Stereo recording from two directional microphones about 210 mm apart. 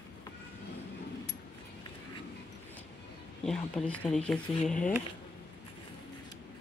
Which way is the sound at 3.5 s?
5° left (ahead or behind).